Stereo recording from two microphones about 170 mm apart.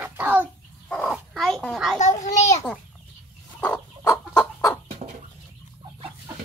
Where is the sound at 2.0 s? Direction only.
45° left (ahead or behind).